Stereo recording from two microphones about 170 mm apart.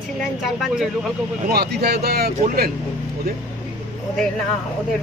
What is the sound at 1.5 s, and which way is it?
Speech, 70° right (ahead or behind).